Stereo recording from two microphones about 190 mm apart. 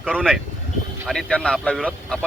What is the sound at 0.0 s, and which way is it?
Speech, centre (ahead or behind).